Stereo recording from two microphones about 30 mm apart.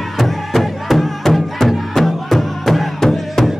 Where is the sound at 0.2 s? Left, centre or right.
Centre.